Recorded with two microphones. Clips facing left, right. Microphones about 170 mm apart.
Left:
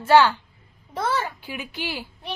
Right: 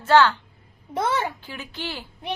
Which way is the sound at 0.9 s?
20° right (ahead or behind).